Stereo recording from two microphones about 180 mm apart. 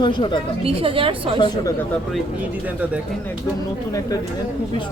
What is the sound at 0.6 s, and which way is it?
Speech, 30° right (ahead or behind).